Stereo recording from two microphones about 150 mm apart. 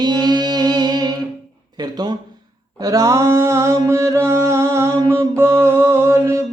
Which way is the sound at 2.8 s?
20° right (ahead or behind).